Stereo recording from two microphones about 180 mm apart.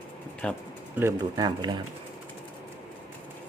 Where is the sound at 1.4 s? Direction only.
25° right (ahead or behind).